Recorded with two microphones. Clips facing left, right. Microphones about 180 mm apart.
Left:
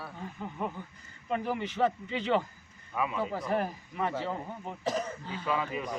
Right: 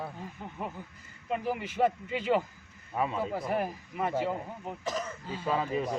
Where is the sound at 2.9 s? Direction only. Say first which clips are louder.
Right 1 dB; 35° right (ahead or behind).